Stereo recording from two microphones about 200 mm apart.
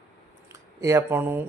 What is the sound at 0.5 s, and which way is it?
Speech, 15° right (ahead or behind).